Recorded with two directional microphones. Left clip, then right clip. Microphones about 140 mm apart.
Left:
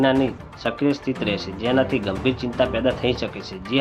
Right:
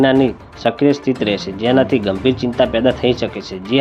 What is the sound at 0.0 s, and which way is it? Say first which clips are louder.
Speech: right 6 dB; 35° right (ahead or behind).